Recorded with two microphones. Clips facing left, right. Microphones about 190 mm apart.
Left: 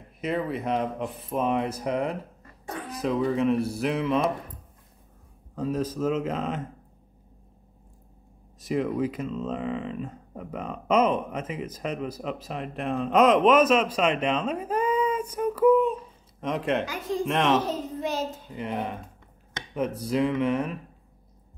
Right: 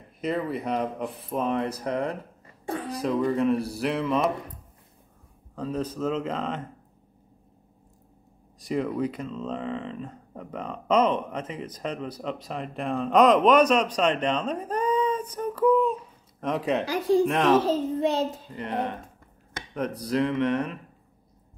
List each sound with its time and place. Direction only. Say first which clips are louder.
0.2 s speech: even; centre (ahead or behind)
5.6 s speech: left 2 dB; 10° left (ahead or behind)
8.6 s speech: left 1 dB; 5° left (ahead or behind)
16.8 s speech: right 8 dB; 35° right (ahead or behind)
17.3 s speech: right 2 dB; centre (ahead or behind)
17.6 s a child's voice: right 6 dB; 30° right (ahead or behind)
18.6 s speech: right 1 dB; centre (ahead or behind)
20.1 s speech: right 1 dB; 5° left (ahead or behind)